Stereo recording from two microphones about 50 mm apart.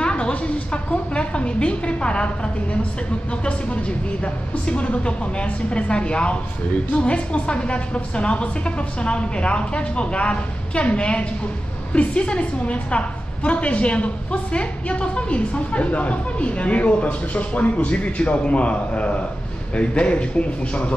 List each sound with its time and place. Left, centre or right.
0.0 s a woman's voice: left